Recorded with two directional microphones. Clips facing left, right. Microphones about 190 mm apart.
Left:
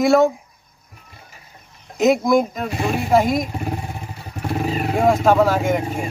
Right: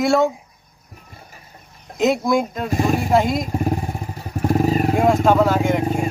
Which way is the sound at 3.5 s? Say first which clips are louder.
Right 5 dB; 40° right (ahead or behind).